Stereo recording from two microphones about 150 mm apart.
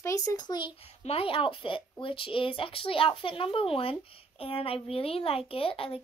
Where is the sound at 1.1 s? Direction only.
40° left (ahead or behind).